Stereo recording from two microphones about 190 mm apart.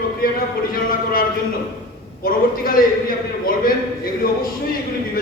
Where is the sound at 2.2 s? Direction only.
50° left (ahead or behind).